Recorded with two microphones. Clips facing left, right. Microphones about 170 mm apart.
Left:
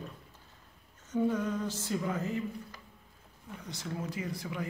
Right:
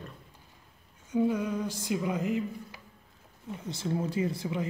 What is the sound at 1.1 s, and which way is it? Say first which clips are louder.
Speech: right 2 dB; 10° right (ahead or behind).